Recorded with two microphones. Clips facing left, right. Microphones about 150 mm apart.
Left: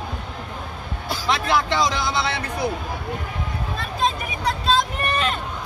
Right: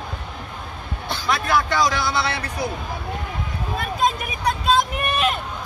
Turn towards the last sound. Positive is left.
turn(degrees=-10)  # may be behind; listen again after turning